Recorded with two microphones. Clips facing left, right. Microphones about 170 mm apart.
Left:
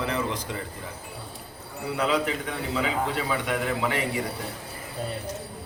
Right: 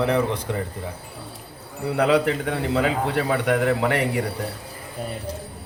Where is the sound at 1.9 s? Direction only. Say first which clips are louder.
Right 6 dB; 60° right (ahead or behind).